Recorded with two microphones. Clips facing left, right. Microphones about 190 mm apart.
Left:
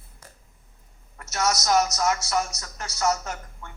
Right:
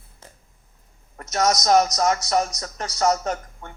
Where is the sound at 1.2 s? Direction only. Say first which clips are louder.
Right 5 dB; 35° right (ahead or behind).